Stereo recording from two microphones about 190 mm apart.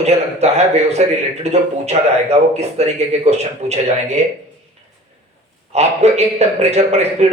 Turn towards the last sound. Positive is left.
turn(degrees=-35)  # may be behind; listen again after turning